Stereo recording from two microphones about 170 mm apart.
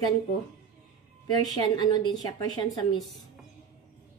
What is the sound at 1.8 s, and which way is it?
A woman's voice, 25° left (ahead or behind).